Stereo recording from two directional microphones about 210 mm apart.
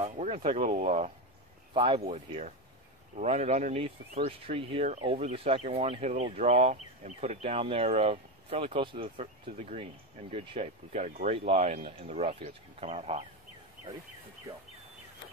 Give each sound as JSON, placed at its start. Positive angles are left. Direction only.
{"t": 0.0, "sound": "speech", "side_deg": -30}